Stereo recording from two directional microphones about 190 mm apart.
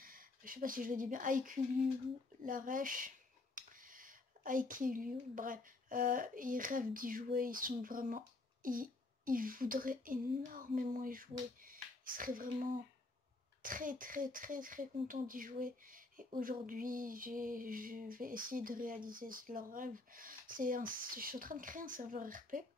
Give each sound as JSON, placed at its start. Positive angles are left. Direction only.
{"t": 0.0, "sound": "speech", "side_deg": -45}